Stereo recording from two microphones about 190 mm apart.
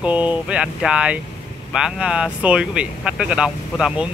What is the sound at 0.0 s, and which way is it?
Speech, 5° right (ahead or behind).